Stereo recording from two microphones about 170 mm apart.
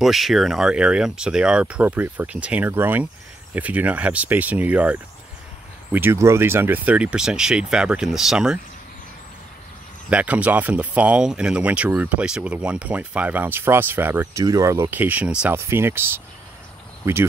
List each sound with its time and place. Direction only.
0.0 s speech: centre (ahead or behind)
10.0 s speech: 5° right (ahead or behind)